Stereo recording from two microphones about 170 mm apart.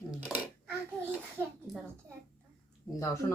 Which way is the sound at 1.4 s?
15° right (ahead or behind).